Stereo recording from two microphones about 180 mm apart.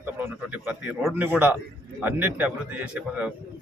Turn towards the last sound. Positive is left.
turn(degrees=-5)  # may be behind; listen again after turning